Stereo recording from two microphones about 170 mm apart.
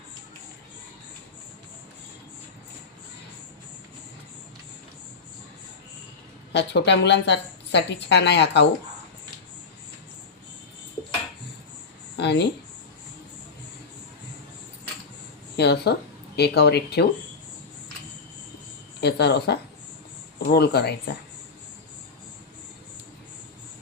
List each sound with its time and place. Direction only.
6.5 s speech: 90° left
12.1 s a sound: 90° left
15.5 s speech: 75° left (ahead or behind)
18.9 s speech: 80° left